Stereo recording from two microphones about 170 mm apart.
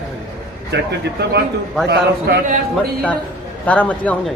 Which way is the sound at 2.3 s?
70° right (ahead or behind).